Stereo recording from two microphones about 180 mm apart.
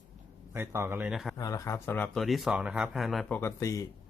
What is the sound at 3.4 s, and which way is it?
Speech, 15° left (ahead or behind).